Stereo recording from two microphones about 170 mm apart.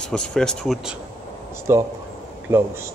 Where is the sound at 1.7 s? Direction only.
15° right (ahead or behind).